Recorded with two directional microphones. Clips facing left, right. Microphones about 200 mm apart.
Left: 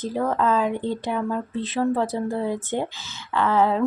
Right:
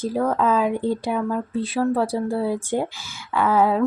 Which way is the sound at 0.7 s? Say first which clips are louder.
Right 3 dB; 45° right (ahead or behind).